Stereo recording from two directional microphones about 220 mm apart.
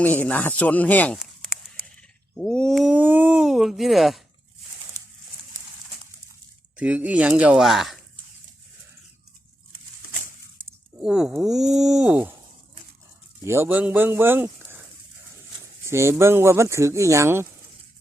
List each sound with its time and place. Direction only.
0.0 s speech: 5° left (ahead or behind)
2.0 s cat: 5° left (ahead or behind)
4.9 s bird: 15° right (ahead or behind)
6.7 s speech: 5° right (ahead or behind)
11.0 s speech: centre (ahead or behind)
13.4 s speech: 10° right (ahead or behind)
15.8 s speech: 10° right (ahead or behind)